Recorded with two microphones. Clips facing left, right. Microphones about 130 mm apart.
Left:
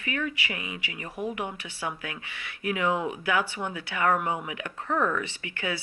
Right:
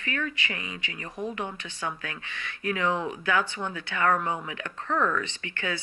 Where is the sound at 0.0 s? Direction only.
20° left (ahead or behind).